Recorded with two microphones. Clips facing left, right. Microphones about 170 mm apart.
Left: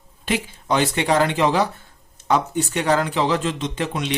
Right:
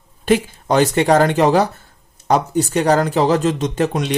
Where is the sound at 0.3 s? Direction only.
45° right (ahead or behind).